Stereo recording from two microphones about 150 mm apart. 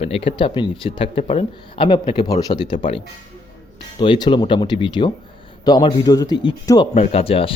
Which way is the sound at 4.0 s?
30° left (ahead or behind).